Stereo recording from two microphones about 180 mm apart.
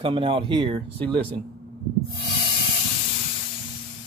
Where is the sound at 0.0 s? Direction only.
30° right (ahead or behind).